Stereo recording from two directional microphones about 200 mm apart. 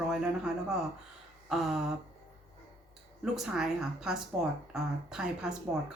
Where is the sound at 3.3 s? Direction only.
5° right (ahead or behind).